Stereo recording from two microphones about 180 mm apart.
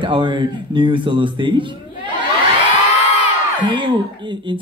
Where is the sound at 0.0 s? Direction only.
25° right (ahead or behind).